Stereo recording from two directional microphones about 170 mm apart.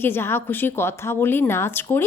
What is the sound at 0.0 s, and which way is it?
Speech, 15° left (ahead or behind).